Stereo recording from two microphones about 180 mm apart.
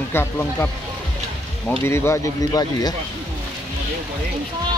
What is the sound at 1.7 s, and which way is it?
Speech, 15° left (ahead or behind).